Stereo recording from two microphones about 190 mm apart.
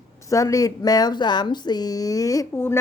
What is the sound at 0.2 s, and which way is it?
Speech, 15° left (ahead or behind).